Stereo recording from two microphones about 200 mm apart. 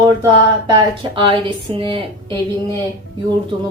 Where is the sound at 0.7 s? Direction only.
20° right (ahead or behind).